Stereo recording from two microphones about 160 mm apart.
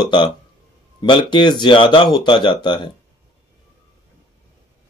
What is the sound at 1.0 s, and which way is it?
Speech, 30° left (ahead or behind).